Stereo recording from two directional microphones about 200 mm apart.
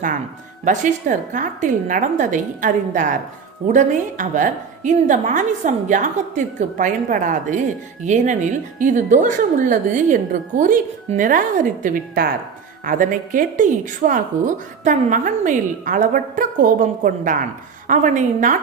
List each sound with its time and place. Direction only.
0.6 s a woman's voice: 40° right (ahead or behind)